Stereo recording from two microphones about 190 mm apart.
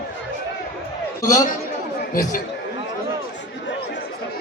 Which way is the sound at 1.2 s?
45° left (ahead or behind).